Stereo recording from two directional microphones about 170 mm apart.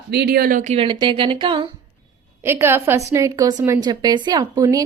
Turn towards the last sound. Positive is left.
turn(degrees=-20)  # may be behind; listen again after turning